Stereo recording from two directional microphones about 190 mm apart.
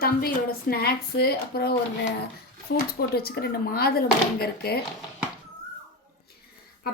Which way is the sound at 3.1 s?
55° left (ahead or behind).